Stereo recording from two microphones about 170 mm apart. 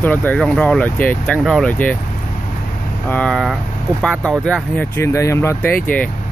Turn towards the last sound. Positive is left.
turn(degrees=15)  # may be behind; listen again after turning